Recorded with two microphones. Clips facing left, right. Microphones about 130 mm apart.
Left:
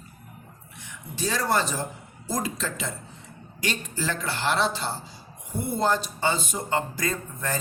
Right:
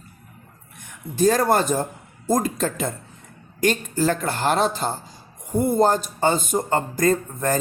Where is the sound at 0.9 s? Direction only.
50° right (ahead or behind).